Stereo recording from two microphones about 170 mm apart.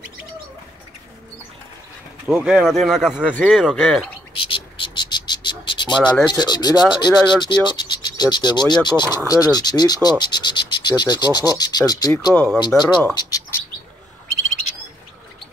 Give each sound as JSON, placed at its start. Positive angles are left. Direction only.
{"t": 2.2, "sound": "speech", "side_deg": -5}
{"t": 4.4, "sound": "insect", "side_deg": 30}
{"t": 6.0, "sound": "speech", "side_deg": 0}
{"t": 6.4, "sound": "cricket", "side_deg": 25}